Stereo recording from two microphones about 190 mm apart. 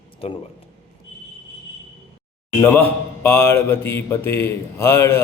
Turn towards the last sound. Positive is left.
turn(degrees=15)  # may be behind; listen again after turning